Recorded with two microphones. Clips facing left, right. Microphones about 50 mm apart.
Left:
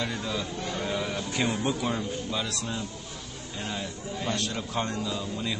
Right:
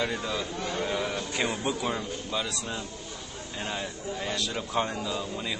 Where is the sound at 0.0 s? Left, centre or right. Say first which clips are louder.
Right 1 dB; centre.